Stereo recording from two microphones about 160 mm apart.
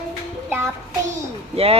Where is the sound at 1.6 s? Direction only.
40° right (ahead or behind).